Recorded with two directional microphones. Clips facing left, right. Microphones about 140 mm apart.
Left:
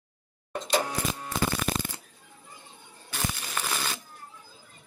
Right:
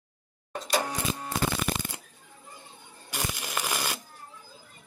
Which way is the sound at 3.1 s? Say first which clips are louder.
Even; 10° right (ahead or behind).